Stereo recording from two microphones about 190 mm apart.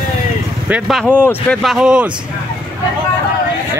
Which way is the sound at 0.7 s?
5° right (ahead or behind).